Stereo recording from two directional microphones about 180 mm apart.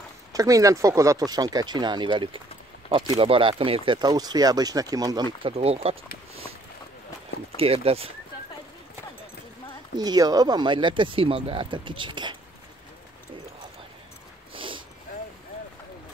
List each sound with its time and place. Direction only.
0.3 s speech: 20° right (ahead or behind)
5.5 s speech: 35° right (ahead or behind)
7.5 s speech: 30° right (ahead or behind)
9.9 s speech: 20° right (ahead or behind)
14.5 s a sound: 30° right (ahead or behind)